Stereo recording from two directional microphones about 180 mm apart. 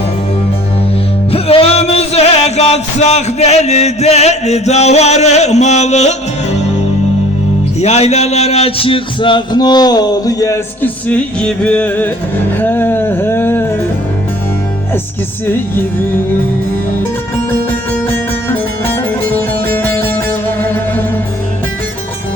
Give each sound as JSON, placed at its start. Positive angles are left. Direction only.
{"t": 1.3, "sound": "music", "side_deg": 35}
{"t": 7.8, "sound": "a man's voice", "side_deg": 35}
{"t": 12.5, "sound": "music", "side_deg": 10}
{"t": 18.4, "sound": "music", "side_deg": 10}